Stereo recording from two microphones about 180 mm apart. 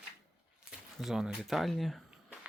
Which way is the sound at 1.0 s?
Centre (ahead or behind).